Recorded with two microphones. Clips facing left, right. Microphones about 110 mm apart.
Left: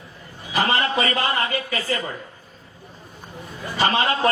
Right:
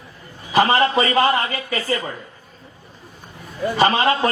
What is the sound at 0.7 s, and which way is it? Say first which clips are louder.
A man's voice: right 5 dB; 30° right (ahead or behind).